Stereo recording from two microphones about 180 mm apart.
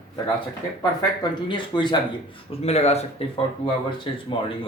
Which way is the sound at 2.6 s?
35° left (ahead or behind).